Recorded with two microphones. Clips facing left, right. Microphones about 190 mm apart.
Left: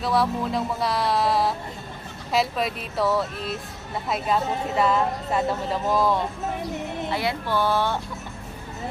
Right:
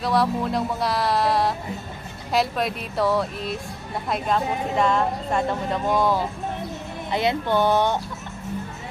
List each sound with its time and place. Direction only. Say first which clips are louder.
0.0 s music: right 1 dB; centre (ahead or behind)
2.3 s speech: right 1 dB; centre (ahead or behind)
4.7 s speech: even; 5° left (ahead or behind)
7.1 s speech: right 6 dB; 20° right (ahead or behind)